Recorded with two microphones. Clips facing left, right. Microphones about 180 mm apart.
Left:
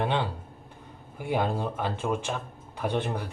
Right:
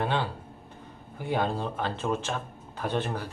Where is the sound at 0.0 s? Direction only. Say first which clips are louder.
Left 1 dB; 15° left (ahead or behind).